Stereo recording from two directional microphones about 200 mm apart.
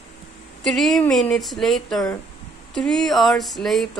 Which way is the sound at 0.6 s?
Centre (ahead or behind).